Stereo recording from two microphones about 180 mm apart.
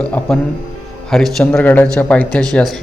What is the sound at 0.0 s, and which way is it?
Speech, 5° left (ahead or behind).